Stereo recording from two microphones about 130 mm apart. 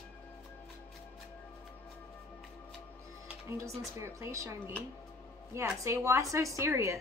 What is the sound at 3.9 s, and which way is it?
Speech, 20° right (ahead or behind).